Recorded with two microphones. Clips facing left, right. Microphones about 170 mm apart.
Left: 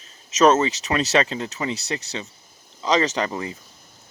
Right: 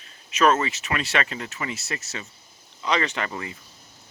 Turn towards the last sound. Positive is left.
turn(degrees=25)  # may be behind; listen again after turning